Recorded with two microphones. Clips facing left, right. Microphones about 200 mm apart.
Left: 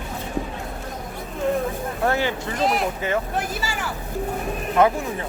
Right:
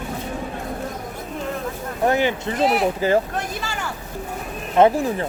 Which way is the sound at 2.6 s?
5° right (ahead or behind).